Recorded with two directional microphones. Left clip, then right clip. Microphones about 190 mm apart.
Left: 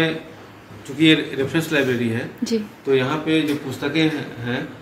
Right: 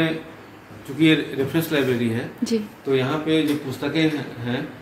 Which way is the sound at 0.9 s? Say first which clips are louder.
Left 2 dB; 35° right (ahead or behind).